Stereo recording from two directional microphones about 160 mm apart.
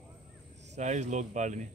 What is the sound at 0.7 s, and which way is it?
Speech, 50° right (ahead or behind).